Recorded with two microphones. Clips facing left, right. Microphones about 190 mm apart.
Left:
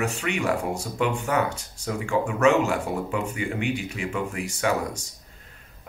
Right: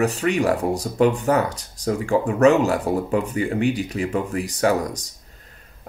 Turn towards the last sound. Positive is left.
turn(degrees=-40)  # may be behind; listen again after turning